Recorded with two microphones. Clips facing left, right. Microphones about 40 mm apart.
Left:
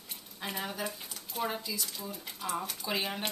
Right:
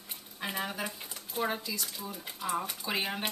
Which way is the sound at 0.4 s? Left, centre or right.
Centre.